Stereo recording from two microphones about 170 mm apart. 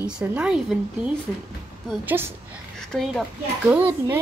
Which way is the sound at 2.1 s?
15° right (ahead or behind).